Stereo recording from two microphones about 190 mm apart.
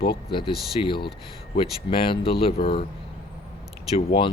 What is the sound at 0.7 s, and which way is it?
Speech, 25° left (ahead or behind).